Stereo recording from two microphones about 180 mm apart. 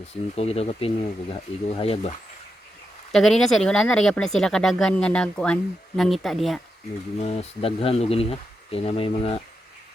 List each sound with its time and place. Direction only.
0.3 s speech: 35° left (ahead or behind)
3.1 s speech: centre (ahead or behind)
7.2 s speech: 35° left (ahead or behind)